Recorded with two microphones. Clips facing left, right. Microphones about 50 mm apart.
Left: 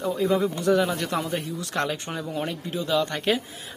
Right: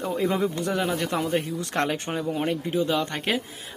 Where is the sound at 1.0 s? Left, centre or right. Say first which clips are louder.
Right 1 dB; right.